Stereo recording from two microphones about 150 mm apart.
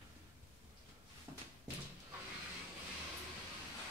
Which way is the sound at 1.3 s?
20° right (ahead or behind).